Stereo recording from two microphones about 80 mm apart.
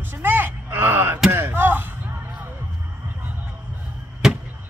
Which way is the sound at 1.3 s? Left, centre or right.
Right.